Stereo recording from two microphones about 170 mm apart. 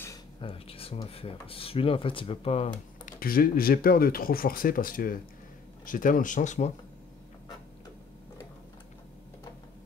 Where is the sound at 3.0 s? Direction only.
60° left (ahead or behind).